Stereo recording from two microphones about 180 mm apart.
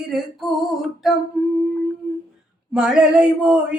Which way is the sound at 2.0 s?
Centre (ahead or behind).